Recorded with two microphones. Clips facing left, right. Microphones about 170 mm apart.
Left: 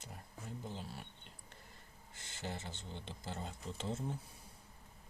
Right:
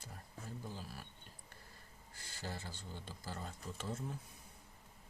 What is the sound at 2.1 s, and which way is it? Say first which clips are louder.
Speech: left 2 dB; 20° left (ahead or behind).